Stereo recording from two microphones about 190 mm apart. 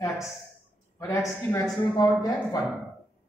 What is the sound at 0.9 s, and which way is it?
A man's voice, 15° left (ahead or behind).